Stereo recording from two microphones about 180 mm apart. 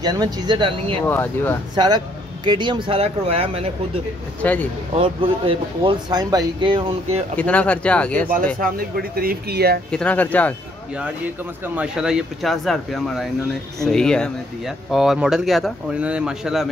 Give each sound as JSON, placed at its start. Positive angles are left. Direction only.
{"t": 0.0, "sound": "speech", "side_deg": -20}
{"t": 1.0, "sound": "speech", "side_deg": 10}
{"t": 1.8, "sound": "speech", "side_deg": -25}
{"t": 4.4, "sound": "speech", "side_deg": 10}
{"t": 4.9, "sound": "speech", "side_deg": -30}
{"t": 7.3, "sound": "speech", "side_deg": 5}
{"t": 8.5, "sound": "speech", "side_deg": -55}
{"t": 9.8, "sound": "speech", "side_deg": 5}
{"t": 11.0, "sound": "speech", "side_deg": -10}